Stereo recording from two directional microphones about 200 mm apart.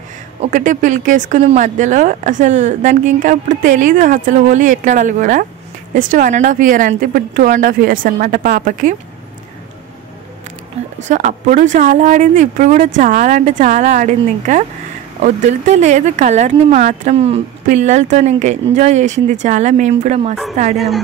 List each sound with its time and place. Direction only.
0.4 s speech: 40° right (ahead or behind)
11.1 s speech: 40° right (ahead or behind)
20.7 s a woman's voice: centre (ahead or behind)